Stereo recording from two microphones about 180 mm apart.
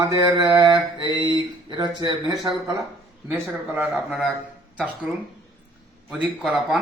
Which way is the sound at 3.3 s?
Centre (ahead or behind).